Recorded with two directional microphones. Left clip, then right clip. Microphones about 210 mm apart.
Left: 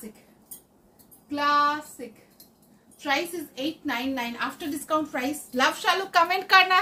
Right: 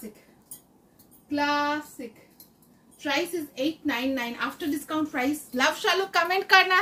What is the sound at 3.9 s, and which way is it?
A woman's voice, 10° left (ahead or behind).